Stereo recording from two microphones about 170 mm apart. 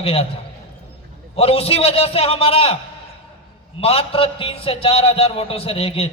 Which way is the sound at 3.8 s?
35° left (ahead or behind).